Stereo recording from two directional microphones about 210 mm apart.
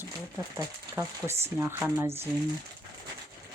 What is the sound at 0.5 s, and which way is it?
Speech, 10° right (ahead or behind).